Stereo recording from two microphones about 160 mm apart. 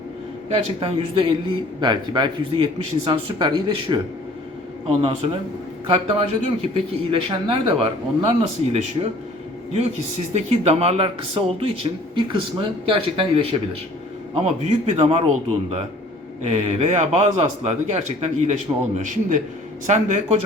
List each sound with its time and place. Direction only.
0.8 s a man's voice: 35° right (ahead or behind)
10.3 s a man's voice: 40° right (ahead or behind)